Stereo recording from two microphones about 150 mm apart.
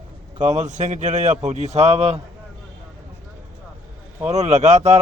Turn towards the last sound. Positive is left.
turn(degrees=-50)  # may be behind; listen again after turning